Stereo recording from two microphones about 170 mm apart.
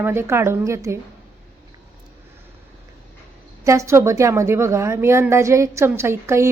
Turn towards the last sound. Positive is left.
turn(degrees=-15)  # may be behind; listen again after turning